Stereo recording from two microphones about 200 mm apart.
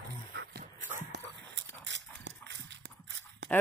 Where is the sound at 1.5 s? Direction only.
65° right (ahead or behind).